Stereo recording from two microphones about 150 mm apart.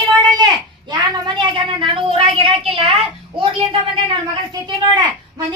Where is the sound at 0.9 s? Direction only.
30° right (ahead or behind).